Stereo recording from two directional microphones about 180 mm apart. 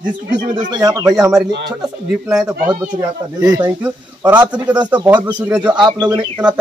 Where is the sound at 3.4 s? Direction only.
20° right (ahead or behind).